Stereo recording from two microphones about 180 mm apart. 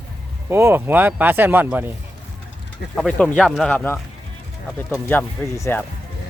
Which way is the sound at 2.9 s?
Centre (ahead or behind).